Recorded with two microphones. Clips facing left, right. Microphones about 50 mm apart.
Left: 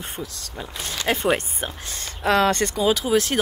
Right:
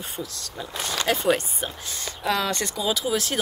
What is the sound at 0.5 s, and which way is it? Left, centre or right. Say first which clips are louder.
Speech: right 2 dB; left.